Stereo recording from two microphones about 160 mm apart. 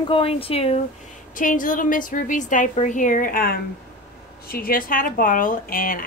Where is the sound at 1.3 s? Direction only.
55° left (ahead or behind).